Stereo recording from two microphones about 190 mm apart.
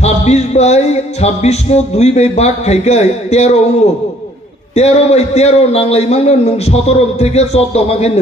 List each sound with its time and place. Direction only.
0.0 s music: 35° left (ahead or behind)
4.7 s music: 35° left (ahead or behind)